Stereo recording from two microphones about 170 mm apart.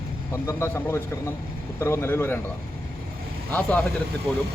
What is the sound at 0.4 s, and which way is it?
Speech, 15° left (ahead or behind).